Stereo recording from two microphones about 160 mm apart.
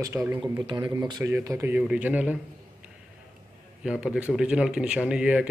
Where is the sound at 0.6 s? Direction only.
25° right (ahead or behind); by 2.4 s 10° right (ahead or behind).